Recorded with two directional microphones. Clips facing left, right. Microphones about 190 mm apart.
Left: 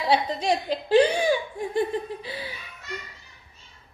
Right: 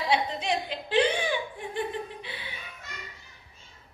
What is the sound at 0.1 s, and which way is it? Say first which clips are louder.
Laughter: left 5 dB; 40° left (ahead or behind).